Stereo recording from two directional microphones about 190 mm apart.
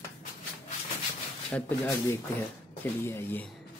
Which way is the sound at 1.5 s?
10° left (ahead or behind).